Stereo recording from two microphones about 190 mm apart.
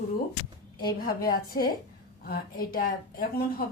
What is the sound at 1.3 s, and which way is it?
A woman's voice, 50° left (ahead or behind).